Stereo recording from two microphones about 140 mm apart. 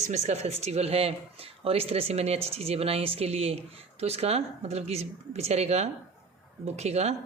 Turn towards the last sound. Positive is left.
turn(degrees=-50)  # may be behind; listen again after turning